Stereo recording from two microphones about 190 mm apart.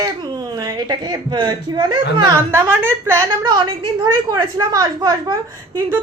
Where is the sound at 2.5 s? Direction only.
10° right (ahead or behind).